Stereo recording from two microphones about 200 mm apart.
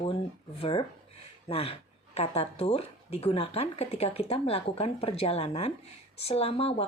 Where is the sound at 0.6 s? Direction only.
25° left (ahead or behind).